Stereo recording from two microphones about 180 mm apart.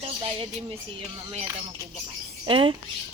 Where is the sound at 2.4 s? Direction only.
30° right (ahead or behind).